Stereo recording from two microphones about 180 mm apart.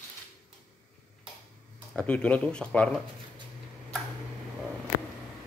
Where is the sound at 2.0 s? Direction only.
5° left (ahead or behind).